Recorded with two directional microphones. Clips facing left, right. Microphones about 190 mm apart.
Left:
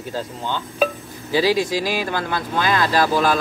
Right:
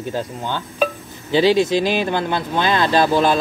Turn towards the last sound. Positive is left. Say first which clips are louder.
# right 2 dB
turn(degrees=-25)  # may be behind; listen again after turning